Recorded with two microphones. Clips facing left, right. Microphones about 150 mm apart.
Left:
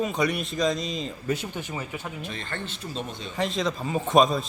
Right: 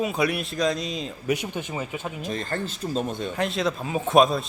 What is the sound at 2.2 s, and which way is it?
Speech, 40° right (ahead or behind).